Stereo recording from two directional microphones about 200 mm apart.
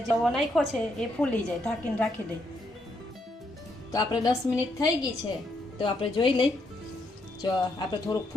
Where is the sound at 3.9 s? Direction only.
20° left (ahead or behind).